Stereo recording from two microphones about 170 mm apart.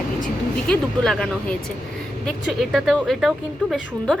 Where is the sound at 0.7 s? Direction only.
5° left (ahead or behind).